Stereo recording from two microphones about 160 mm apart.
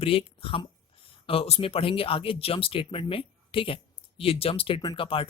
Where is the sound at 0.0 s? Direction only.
35° left (ahead or behind).